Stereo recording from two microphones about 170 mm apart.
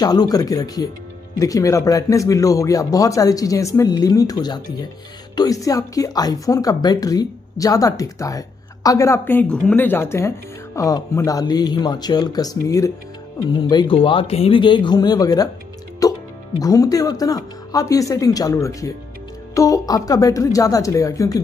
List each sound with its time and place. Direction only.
0.0 s speech: 25° left (ahead or behind)
16.0 s music: 20° left (ahead or behind)
16.5 s speech: 20° left (ahead or behind)